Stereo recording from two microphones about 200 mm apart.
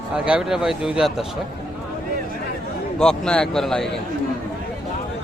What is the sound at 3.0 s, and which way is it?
A man's voice, 5° left (ahead or behind).